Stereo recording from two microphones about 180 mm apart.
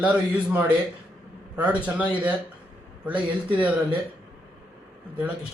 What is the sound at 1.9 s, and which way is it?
A man's voice, 10° right (ahead or behind).